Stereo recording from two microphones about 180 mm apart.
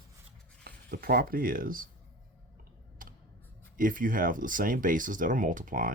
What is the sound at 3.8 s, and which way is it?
Speech, 50° right (ahead or behind).